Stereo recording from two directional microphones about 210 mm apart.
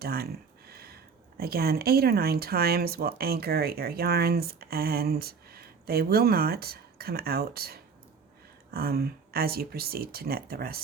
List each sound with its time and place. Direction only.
0.0 s speech: 45° right (ahead or behind)
0.7 s a sound: 45° right (ahead or behind)
1.4 s speech: 45° right (ahead or behind)